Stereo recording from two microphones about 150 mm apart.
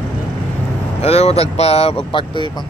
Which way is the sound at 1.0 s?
45° left (ahead or behind).